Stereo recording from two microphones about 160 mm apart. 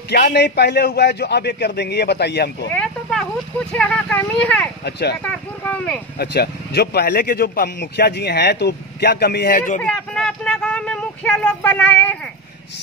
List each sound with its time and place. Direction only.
0.1 s a man's voice: 90° left
2.7 s speech: 5° left (ahead or behind)
6.1 s speech: 85° left
9.8 s speech: 5° left (ahead or behind)